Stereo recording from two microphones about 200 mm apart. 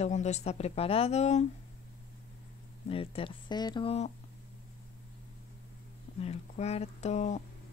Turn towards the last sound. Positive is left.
turn(degrees=35)  # may be behind; listen again after turning